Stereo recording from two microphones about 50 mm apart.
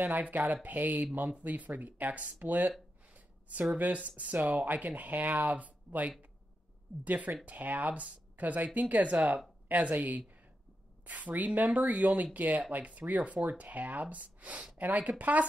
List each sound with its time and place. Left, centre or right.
0.0 s speech: right
3.1 s a sound: right
3.7 s speech: right